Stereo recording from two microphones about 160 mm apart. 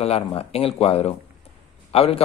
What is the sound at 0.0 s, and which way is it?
A man's voice, 40° left (ahead or behind).